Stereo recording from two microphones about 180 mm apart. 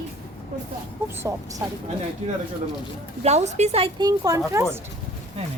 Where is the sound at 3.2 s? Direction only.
40° right (ahead or behind).